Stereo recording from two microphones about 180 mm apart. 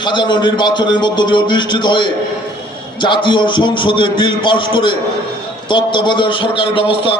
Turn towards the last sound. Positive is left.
turn(degrees=30)  # may be behind; listen again after turning